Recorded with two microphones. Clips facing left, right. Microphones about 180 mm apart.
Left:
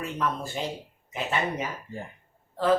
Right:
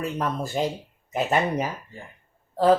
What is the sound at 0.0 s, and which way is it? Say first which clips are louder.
Speech: right 3 dB; 40° right (ahead or behind).